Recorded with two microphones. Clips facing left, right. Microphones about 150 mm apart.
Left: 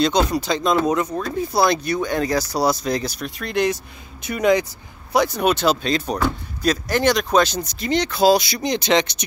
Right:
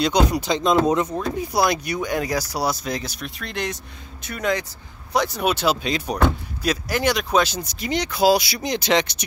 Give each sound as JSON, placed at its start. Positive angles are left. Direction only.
{"t": 0.0, "sound": "speech", "side_deg": -15}
{"t": 4.2, "sound": "speech", "side_deg": 15}
{"t": 5.1, "sound": "speech", "side_deg": 0}